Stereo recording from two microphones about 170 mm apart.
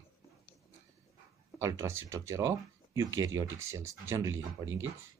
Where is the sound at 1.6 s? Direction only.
20° right (ahead or behind).